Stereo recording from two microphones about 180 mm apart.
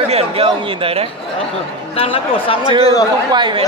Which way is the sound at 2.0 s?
30° left (ahead or behind).